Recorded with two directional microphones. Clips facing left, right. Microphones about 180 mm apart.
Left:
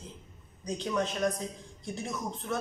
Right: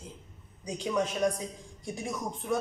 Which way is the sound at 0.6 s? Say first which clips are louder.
Right 1 dB; 10° right (ahead or behind).